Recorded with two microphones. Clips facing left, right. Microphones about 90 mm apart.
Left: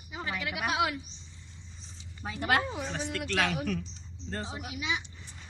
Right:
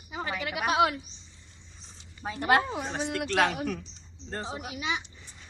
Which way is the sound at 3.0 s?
55° right (ahead or behind).